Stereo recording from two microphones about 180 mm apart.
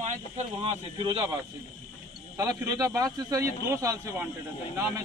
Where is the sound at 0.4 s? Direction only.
30° right (ahead or behind).